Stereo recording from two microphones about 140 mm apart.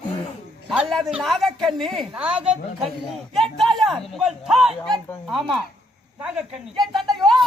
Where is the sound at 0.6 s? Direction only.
Centre (ahead or behind).